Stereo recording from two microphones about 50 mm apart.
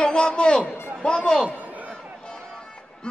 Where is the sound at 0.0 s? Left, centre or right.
Centre.